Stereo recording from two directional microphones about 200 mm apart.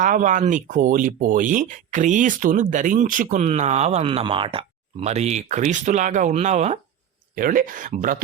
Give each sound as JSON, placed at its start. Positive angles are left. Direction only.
{"t": 0.0, "sound": "speech", "side_deg": -40}